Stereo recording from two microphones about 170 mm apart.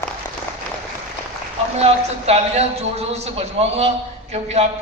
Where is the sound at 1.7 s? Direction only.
40° right (ahead or behind).